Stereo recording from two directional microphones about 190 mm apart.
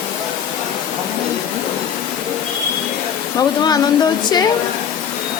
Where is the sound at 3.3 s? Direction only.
20° left (ahead or behind).